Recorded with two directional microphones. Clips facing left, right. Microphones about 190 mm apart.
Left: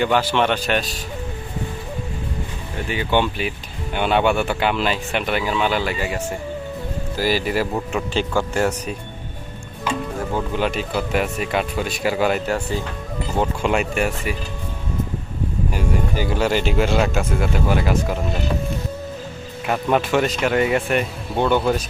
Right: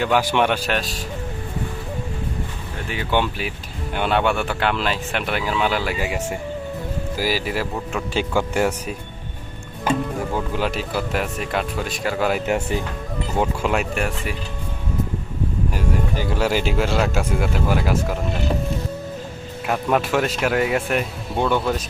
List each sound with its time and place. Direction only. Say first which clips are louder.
0.0 s speech: even; 10° right (ahead or behind)
2.9 s speech: left 2 dB; centre (ahead or behind)
8.1 s speech: right 1 dB; 15° right (ahead or behind)
10.3 s speech: left 3 dB; centre (ahead or behind)
12.5 s speech: right 1 dB; 20° right (ahead or behind)
13.4 s speech: left 1 dB; 5° right (ahead or behind)
15.7 s speech: left 3 dB; centre (ahead or behind)
19.6 s speech: left 1 dB; centre (ahead or behind)